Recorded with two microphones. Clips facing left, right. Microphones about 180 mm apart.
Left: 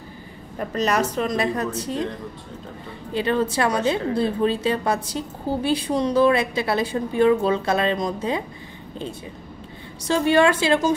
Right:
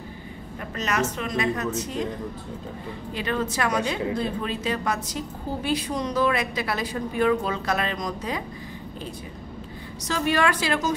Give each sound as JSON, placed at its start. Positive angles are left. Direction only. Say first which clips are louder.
{"t": 0.6, "sound": "speech", "louder": "left 5 dB", "side_deg": 35}
{"t": 3.1, "sound": "speech", "louder": "left 6 dB", "side_deg": 30}
{"t": 10.0, "sound": "speech", "louder": "left 6 dB", "side_deg": 30}